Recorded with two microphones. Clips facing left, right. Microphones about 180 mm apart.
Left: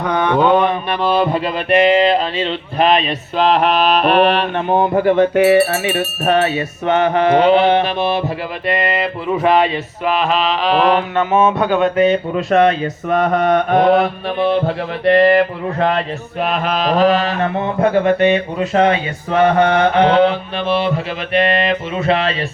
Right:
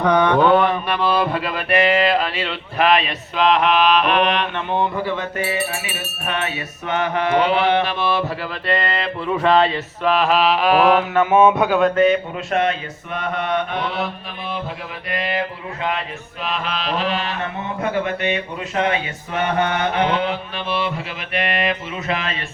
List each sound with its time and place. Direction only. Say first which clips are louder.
0.3 s mantra: left 2 dB; 15° left (ahead or behind); by 5.7 s 65° left (ahead or behind)
5.9 s mantra: left 11 dB; 45° left (ahead or behind); by 8.2 s 20° left (ahead or behind)
8.6 s music: left 4 dB; 15° left (ahead or behind)
10.1 s mantra: even; centre (ahead or behind)
12.0 s mantra: left 3 dB; 35° left (ahead or behind); by 14.4 s 60° left (ahead or behind)
14.5 s mantra: left 11 dB; 70° left (ahead or behind)
16.4 s mantra: left 8 dB; 50° left (ahead or behind); by 22.4 s 35° left (ahead or behind)